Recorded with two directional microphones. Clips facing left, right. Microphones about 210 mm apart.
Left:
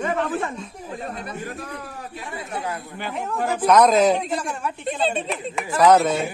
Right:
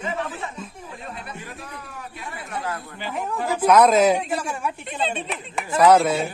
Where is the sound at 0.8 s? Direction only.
40° left (ahead or behind).